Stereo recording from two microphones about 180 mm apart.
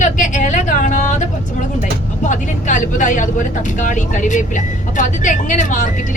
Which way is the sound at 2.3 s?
45° left (ahead or behind).